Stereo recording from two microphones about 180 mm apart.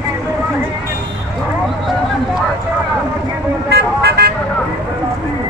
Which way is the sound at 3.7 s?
65° right (ahead or behind).